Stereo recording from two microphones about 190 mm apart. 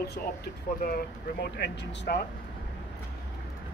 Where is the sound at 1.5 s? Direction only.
65° left (ahead or behind).